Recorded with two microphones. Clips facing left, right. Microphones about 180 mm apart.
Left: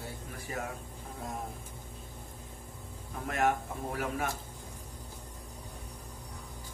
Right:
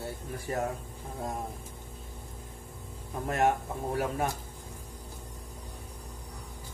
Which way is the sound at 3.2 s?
35° right (ahead or behind).